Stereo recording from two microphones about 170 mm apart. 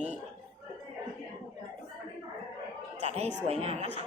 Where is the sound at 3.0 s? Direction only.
40° right (ahead or behind).